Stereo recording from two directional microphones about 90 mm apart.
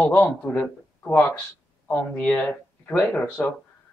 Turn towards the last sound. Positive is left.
turn(degrees=10)  # may be behind; listen again after turning